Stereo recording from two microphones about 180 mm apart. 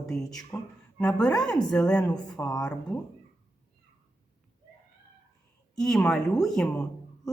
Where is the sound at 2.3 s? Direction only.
20° left (ahead or behind).